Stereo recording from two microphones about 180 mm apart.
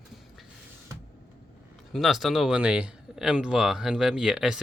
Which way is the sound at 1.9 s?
Centre (ahead or behind).